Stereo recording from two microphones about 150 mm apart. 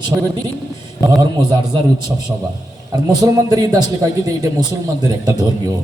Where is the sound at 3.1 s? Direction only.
25° right (ahead or behind).